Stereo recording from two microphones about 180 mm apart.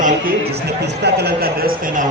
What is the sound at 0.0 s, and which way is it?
A man's voice, 60° right (ahead or behind).